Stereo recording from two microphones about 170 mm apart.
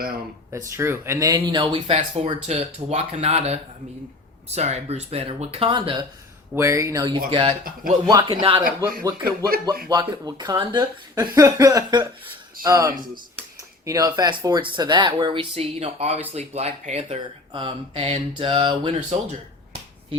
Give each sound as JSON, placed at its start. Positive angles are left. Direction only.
{"t": 0.5, "sound": "speech", "side_deg": -15}
{"t": 6.6, "sound": "speech", "side_deg": -15}
{"t": 7.3, "sound": "speech", "side_deg": -30}
{"t": 8.6, "sound": "speech", "side_deg": -55}
{"t": 9.0, "sound": "speech", "side_deg": -25}
{"t": 18.9, "sound": "a sound", "side_deg": -35}